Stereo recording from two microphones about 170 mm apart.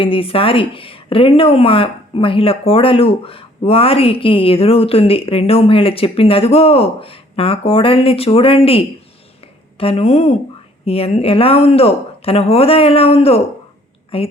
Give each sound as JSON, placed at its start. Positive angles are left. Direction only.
{"t": 0.0, "sound": "speech", "side_deg": 35}